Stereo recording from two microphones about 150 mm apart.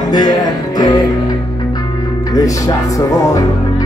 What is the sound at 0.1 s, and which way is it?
Music, 25° left (ahead or behind).